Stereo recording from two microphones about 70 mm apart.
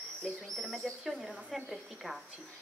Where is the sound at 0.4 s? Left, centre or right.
Centre.